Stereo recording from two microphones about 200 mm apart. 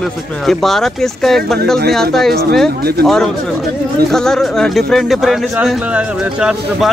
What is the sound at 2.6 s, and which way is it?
Speech, 50° right (ahead or behind).